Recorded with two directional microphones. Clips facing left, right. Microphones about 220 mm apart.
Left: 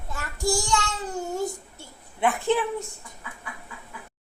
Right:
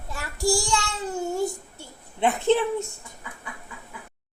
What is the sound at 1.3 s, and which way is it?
Speech, 15° right (ahead or behind).